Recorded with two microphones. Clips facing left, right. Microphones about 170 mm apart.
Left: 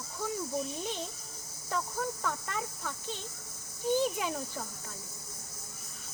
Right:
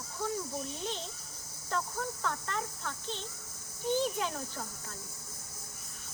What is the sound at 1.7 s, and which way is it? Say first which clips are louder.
Speech: left 1 dB; 10° left (ahead or behind).